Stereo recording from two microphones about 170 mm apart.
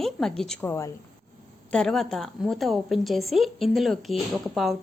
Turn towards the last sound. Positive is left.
turn(degrees=0)  # may be behind; listen again after turning